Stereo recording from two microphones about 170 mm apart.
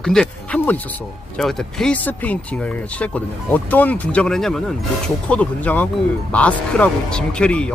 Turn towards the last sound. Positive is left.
turn(degrees=5)  # may be behind; listen again after turning